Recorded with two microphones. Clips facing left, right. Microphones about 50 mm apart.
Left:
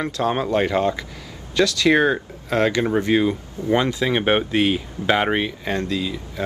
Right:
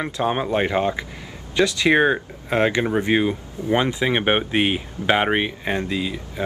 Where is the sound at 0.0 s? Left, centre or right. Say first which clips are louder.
Left 1 dB; centre.